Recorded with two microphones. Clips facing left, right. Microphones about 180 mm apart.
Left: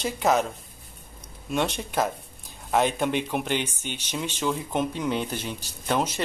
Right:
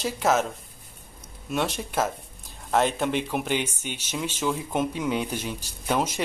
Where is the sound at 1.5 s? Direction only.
Centre (ahead or behind).